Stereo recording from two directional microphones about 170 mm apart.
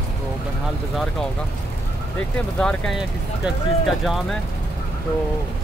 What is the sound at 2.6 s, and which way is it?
Speech, 5° left (ahead or behind).